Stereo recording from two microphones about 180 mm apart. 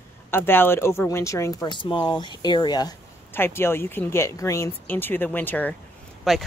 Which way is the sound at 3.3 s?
15° left (ahead or behind).